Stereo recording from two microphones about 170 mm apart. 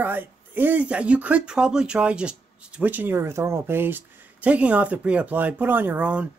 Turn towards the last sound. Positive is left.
turn(degrees=-10)  # may be behind; listen again after turning